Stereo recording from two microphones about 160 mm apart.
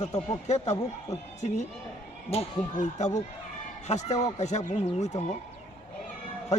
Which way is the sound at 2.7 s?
50° left (ahead or behind).